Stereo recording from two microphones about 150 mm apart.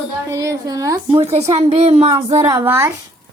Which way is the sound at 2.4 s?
15° right (ahead or behind).